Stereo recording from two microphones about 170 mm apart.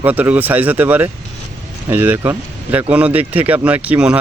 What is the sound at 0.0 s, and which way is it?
Speech, 10° right (ahead or behind).